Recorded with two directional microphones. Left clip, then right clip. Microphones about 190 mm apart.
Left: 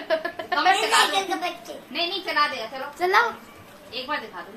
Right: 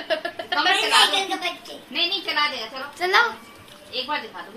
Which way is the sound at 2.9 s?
40° left (ahead or behind).